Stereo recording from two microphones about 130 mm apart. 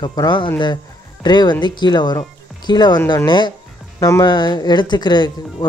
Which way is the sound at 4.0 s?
25° left (ahead or behind).